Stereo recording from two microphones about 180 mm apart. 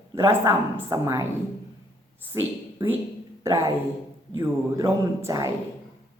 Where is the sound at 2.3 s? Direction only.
10° right (ahead or behind).